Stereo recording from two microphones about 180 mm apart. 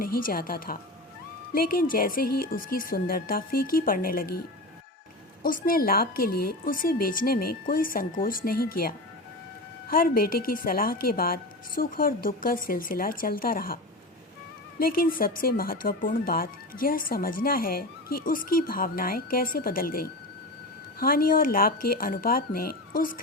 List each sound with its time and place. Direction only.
0.0 s speech: 55° left (ahead or behind)
9.9 s speech: 50° left (ahead or behind)
14.8 s speech: 55° left (ahead or behind)